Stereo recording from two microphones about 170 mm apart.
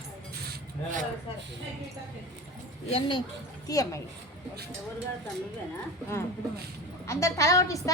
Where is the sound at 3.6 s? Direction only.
20° left (ahead or behind).